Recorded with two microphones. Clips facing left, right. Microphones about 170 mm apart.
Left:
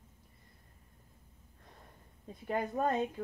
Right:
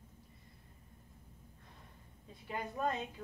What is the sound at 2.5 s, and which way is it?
Speech, 50° left (ahead or behind).